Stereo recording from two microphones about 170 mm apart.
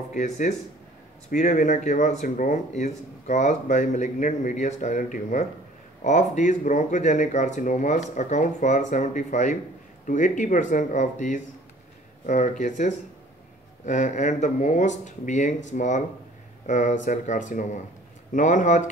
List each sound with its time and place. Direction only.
0.1 s speech: 45° left (ahead or behind)